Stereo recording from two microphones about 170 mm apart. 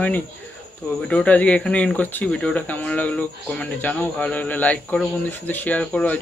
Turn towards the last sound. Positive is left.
turn(degrees=10)  # may be behind; listen again after turning